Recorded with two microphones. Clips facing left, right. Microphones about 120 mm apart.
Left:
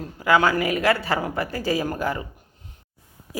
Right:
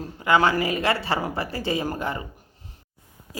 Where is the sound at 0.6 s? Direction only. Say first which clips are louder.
Left 2 dB; 30° right (ahead or behind).